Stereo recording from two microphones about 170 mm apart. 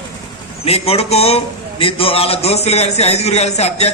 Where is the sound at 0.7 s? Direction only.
35° left (ahead or behind).